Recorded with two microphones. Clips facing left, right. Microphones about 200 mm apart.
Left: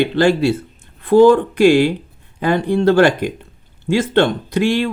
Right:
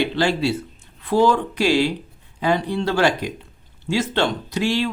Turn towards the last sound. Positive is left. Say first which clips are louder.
# left 5 dB
turn(degrees=55)  # may be behind; listen again after turning